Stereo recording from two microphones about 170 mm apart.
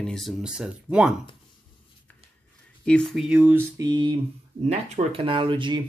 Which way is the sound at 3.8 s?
25° right (ahead or behind).